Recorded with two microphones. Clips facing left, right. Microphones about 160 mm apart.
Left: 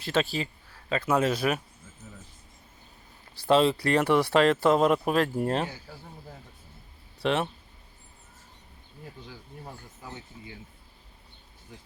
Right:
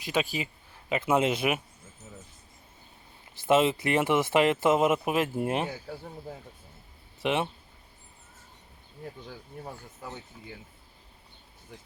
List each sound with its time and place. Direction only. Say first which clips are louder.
0.0 s speech: left 2 dB; 15° right (ahead or behind)
2.0 s a sound: even; 20° right (ahead or behind)
3.4 s speech: left 1 dB; 20° right (ahead or behind)
7.2 s speech: left 1 dB; 15° right (ahead or behind)